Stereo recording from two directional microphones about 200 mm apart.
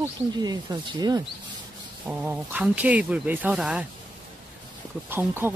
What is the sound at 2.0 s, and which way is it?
Speech, 10° right (ahead or behind).